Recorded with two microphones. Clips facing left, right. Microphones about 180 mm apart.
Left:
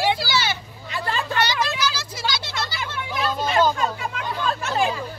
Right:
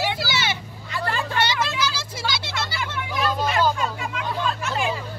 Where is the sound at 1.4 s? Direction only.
25° right (ahead or behind).